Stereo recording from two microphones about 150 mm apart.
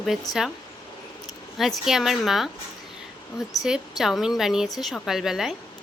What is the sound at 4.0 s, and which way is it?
Speech, centre (ahead or behind).